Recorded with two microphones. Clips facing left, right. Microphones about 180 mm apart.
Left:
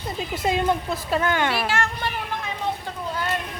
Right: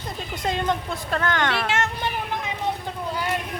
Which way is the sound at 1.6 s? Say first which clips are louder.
Even; 20° right (ahead or behind).